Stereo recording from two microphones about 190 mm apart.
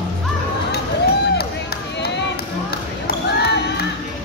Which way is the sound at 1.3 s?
55° left (ahead or behind).